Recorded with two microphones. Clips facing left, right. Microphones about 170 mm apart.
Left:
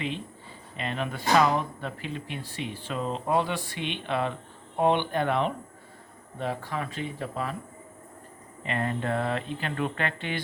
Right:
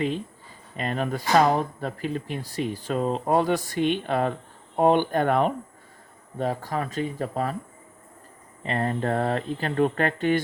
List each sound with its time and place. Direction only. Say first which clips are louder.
0.8 s speech: right 5 dB; 40° right (ahead or behind)
8.6 s speech: right 4 dB; 35° right (ahead or behind)